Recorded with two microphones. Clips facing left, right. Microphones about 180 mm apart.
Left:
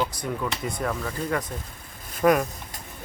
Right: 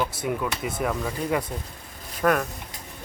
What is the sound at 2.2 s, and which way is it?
Speech, 10° left (ahead or behind).